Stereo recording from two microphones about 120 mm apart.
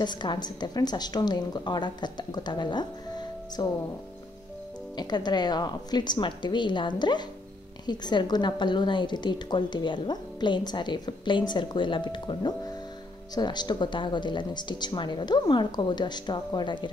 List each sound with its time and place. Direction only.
0.0 s a woman's voice: 40° left (ahead or behind)
4.9 s a woman's voice: 35° left (ahead or behind)